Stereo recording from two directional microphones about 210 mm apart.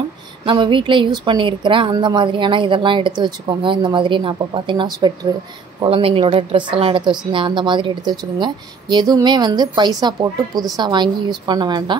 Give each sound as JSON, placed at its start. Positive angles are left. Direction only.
{"t": 0.5, "sound": "a woman's voice", "side_deg": -25}